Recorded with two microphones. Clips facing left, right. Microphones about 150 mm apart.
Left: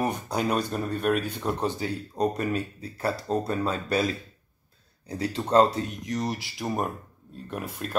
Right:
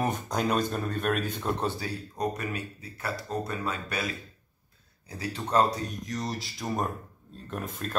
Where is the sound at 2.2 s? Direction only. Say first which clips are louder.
Left 6 dB; 30° left (ahead or behind).